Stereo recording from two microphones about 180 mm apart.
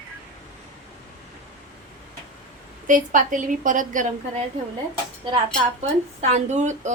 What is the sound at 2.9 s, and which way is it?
Speech, 45° right (ahead or behind).